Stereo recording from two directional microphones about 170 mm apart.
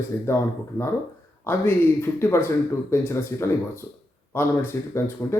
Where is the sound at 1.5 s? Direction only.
15° left (ahead or behind).